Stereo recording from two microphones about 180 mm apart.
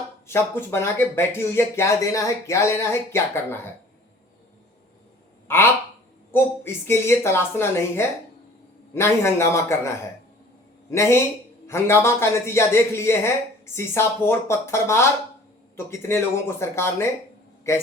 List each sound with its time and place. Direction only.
0.3 s speech: 15° left (ahead or behind)
5.5 s speech: 10° left (ahead or behind)
10.9 s speech: 15° left (ahead or behind)